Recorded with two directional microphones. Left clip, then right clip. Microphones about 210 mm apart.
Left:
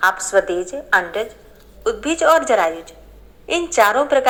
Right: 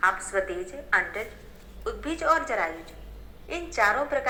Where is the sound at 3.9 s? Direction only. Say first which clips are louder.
Left 11 dB; 40° left (ahead or behind).